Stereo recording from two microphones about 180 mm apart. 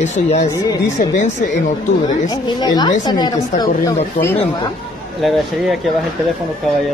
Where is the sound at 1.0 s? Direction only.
50° left (ahead or behind).